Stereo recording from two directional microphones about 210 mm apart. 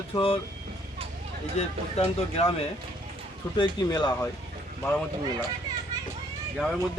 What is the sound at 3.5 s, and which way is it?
Speech, 20° left (ahead or behind).